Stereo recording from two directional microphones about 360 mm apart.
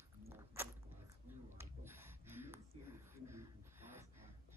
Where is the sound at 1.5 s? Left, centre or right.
Centre.